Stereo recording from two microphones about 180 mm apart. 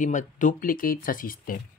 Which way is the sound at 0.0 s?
45° left (ahead or behind).